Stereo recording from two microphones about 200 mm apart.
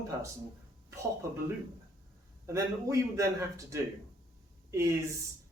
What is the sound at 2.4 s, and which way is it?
Speech, 15° right (ahead or behind).